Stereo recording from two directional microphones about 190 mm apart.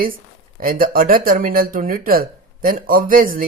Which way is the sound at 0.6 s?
50° right (ahead or behind).